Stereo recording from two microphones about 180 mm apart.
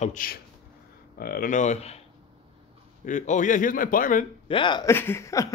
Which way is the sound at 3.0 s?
45° left (ahead or behind).